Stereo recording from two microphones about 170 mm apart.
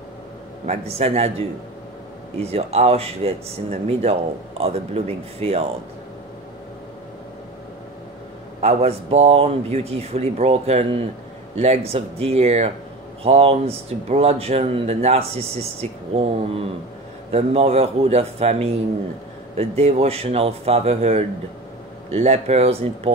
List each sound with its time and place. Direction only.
0.7 s speech: 40° right (ahead or behind)
2.4 s speech: 40° right (ahead or behind)
8.5 s speech: 40° right (ahead or behind)